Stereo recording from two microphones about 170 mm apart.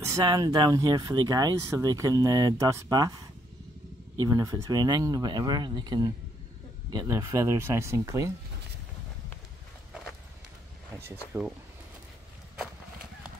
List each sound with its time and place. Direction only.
0.0 s speech: 20° right (ahead or behind)
4.2 s speech: 20° right (ahead or behind)
11.3 s speech: 10° right (ahead or behind)